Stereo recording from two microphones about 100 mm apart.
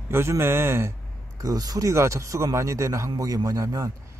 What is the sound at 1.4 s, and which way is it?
Speech, 40° right (ahead or behind).